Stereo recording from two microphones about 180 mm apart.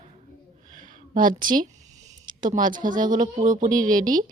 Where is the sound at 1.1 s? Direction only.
50° right (ahead or behind).